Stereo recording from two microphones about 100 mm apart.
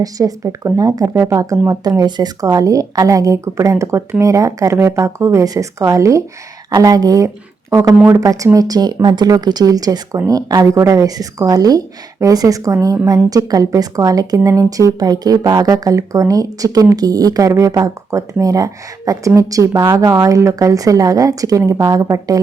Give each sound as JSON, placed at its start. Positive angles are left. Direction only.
{"t": 0.0, "sound": "a woman's voice", "side_deg": -35}